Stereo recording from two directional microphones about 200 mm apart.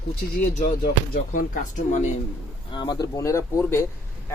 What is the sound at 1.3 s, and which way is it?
Speech, 40° left (ahead or behind).